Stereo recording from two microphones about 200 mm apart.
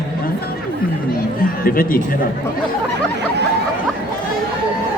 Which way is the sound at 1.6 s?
45° left (ahead or behind).